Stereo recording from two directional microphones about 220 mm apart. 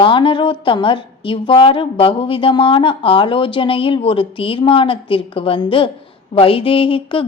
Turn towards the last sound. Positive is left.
turn(degrees=25)  # may be behind; listen again after turning